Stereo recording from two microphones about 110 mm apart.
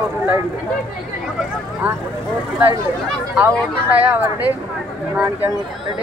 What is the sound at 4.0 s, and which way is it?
Speech, 15° right (ahead or behind).